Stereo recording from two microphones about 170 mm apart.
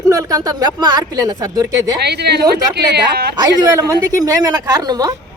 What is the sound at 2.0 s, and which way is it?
Speech, 75° right (ahead or behind).